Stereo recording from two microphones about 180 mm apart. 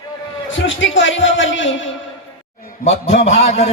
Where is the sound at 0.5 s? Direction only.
90° left.